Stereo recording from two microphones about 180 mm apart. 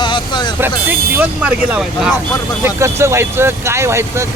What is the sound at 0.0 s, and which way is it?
Vehicle, 25° left (ahead or behind).